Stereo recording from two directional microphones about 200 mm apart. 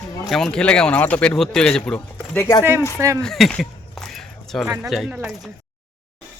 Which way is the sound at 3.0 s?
15° right (ahead or behind).